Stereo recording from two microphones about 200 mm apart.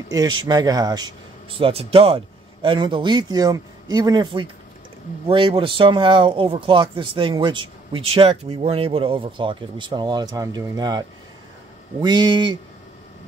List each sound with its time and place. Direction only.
0.1 s speech: 20° right (ahead or behind)